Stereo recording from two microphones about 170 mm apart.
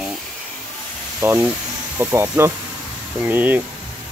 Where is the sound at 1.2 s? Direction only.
15° right (ahead or behind).